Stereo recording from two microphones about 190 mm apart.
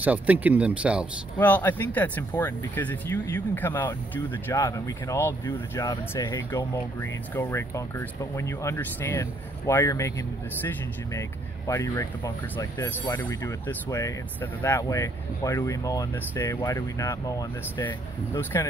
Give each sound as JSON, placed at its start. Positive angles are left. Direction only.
{"t": 0.0, "sound": "speech", "side_deg": -10}
{"t": 1.4, "sound": "speech", "side_deg": 10}